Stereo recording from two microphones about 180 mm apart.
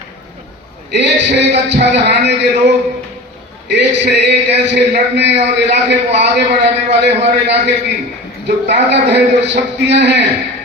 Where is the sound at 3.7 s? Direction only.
70° right (ahead or behind).